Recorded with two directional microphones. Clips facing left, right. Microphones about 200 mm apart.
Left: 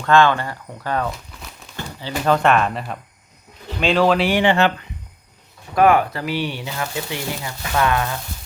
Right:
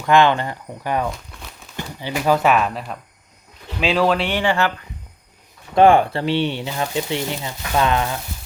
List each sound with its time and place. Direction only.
0.0 s speech: 15° right (ahead or behind)
1.1 s speech: centre (ahead or behind)
1.7 s speech: 15° right (ahead or behind)
4.3 s speech: 20° left (ahead or behind)
5.7 s speech: 30° right (ahead or behind)